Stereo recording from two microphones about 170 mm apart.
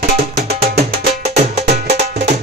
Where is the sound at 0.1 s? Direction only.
40° right (ahead or behind).